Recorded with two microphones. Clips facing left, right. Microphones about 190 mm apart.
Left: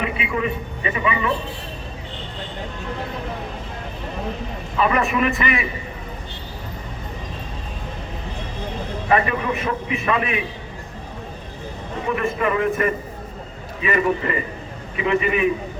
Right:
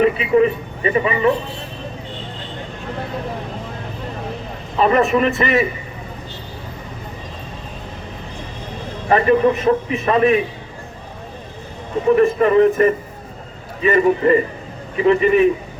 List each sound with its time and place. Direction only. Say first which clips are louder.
0.0 s a man's voice: right 10 dB; 40° right (ahead or behind)
4.8 s a man's voice: right 5 dB; 35° right (ahead or behind)
9.0 s a man's voice: right 7 dB; 35° right (ahead or behind)
12.1 s a man's voice: right 9 dB; 35° right (ahead or behind)